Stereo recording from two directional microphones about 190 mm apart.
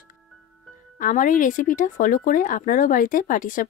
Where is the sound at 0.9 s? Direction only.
45° left (ahead or behind).